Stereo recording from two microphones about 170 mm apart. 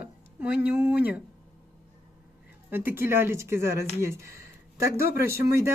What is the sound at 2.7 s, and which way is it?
Speech, 10° right (ahead or behind).